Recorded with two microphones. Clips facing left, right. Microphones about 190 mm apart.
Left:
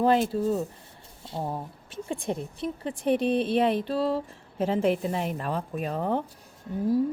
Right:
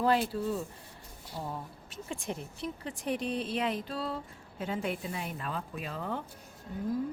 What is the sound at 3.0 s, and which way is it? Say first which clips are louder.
A woman's voice: left 9 dB; 60° left (ahead or behind).